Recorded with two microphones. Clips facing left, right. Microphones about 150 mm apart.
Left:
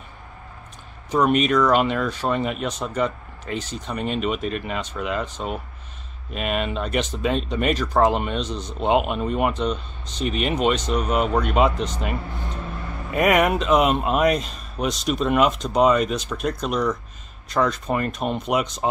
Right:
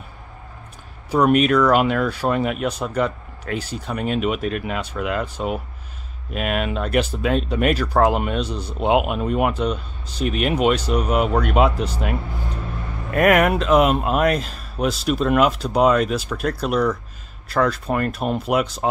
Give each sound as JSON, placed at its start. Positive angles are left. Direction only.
{"t": 1.1, "sound": "speech", "side_deg": -5}